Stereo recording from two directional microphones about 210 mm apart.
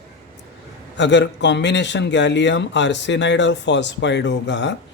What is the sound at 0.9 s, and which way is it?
A man's voice, 60° left (ahead or behind).